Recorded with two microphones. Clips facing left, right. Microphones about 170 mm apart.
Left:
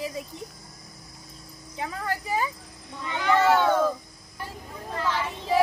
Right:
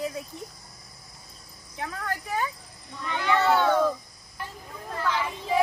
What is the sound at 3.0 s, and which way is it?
Speech, 10° left (ahead or behind).